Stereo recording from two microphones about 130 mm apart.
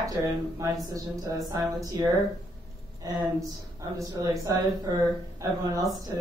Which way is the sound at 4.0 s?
25° right (ahead or behind).